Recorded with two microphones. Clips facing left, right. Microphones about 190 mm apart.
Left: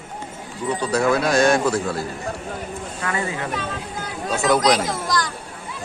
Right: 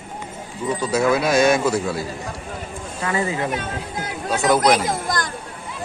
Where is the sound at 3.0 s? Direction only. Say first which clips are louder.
Right 3 dB; 25° right (ahead or behind).